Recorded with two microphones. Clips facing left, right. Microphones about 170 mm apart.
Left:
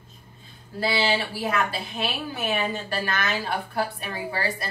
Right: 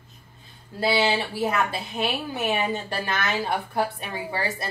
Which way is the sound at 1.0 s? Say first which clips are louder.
Right 1 dB; 20° right (ahead or behind).